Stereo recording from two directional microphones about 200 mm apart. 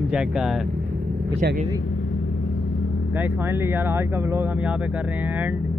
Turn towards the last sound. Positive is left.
turn(degrees=-10)  # may be behind; listen again after turning